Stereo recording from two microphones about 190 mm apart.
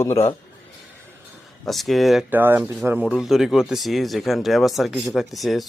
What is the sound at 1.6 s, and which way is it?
Speech, centre (ahead or behind).